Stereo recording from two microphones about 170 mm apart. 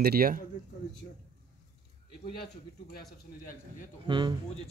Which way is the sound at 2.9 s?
60° left (ahead or behind).